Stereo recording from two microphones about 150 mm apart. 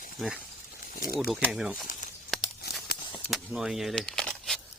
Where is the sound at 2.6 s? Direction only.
90° left.